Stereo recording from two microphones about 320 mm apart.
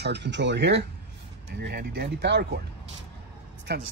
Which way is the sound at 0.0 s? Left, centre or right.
Right.